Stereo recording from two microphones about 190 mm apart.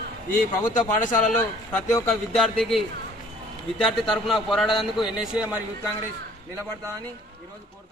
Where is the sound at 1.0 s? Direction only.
40° left (ahead or behind).